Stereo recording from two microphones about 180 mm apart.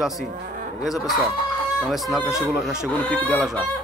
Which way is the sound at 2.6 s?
10° left (ahead or behind).